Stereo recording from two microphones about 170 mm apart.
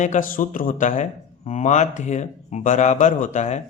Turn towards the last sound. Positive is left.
turn(degrees=45)  # may be behind; listen again after turning